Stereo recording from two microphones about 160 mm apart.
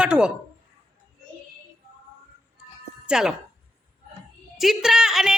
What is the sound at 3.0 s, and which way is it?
Speech, 5° right (ahead or behind).